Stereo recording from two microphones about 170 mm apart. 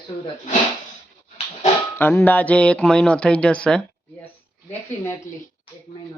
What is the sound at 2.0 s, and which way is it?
Speech, 10° left (ahead or behind).